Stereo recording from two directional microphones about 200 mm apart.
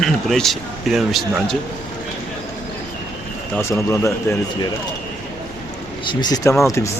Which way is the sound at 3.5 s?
10° left (ahead or behind).